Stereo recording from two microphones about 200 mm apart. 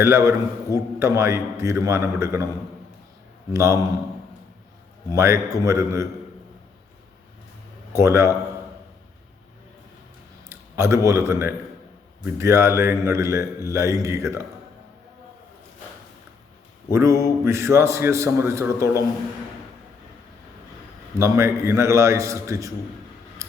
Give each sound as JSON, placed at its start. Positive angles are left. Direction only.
{"t": 0.0, "sound": "a man's voice", "side_deg": -15}
{"t": 3.5, "sound": "a man's voice", "side_deg": -15}
{"t": 5.1, "sound": "a man's voice", "side_deg": -15}
{"t": 7.9, "sound": "a man's voice", "side_deg": -15}
{"t": 10.5, "sound": "a man's voice", "side_deg": -15}
{"t": 16.9, "sound": "a man's voice", "side_deg": -15}
{"t": 21.2, "sound": "a man's voice", "side_deg": -15}
{"t": 23.4, "sound": "a sound", "side_deg": -15}